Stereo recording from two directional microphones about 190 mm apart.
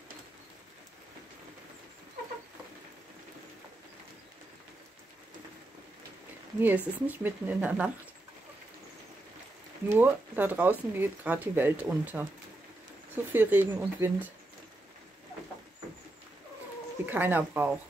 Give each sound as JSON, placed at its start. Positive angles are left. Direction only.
{"t": 6.6, "sound": "speech", "side_deg": -10}
{"t": 9.8, "sound": "speech", "side_deg": -10}
{"t": 17.0, "sound": "speech", "side_deg": -10}